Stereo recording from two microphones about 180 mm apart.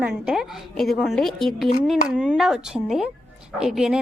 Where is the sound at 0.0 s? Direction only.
5° right (ahead or behind).